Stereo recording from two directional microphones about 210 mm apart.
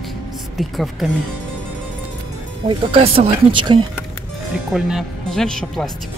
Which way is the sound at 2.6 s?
25° right (ahead or behind).